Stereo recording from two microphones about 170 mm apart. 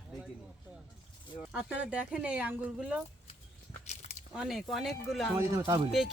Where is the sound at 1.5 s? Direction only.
10° right (ahead or behind).